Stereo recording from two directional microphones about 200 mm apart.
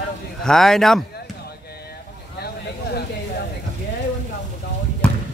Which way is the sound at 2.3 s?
50° left (ahead or behind).